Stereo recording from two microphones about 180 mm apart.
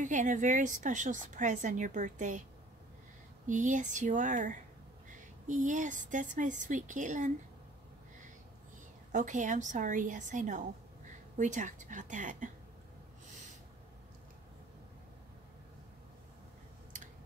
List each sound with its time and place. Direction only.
0.0 s a woman's voice: 45° right (ahead or behind)
3.4 s a woman's voice: 45° right (ahead or behind)
9.1 s a woman's voice: 45° right (ahead or behind)